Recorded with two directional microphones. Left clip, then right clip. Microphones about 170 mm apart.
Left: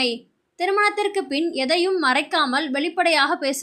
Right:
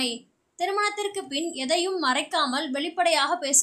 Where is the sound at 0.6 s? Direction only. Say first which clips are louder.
Left 6 dB; 15° left (ahead or behind).